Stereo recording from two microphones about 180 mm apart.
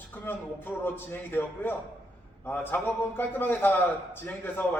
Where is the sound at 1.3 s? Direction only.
10° left (ahead or behind).